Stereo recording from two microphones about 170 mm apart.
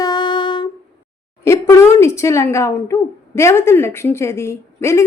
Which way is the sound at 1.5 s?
15° left (ahead or behind).